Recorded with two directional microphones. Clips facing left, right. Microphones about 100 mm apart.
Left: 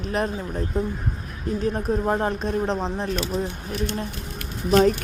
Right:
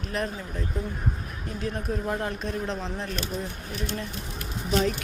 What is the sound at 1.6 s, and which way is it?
Speech, 35° left (ahead or behind).